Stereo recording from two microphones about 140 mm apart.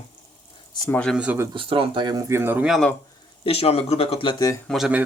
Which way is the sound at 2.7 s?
Centre (ahead or behind).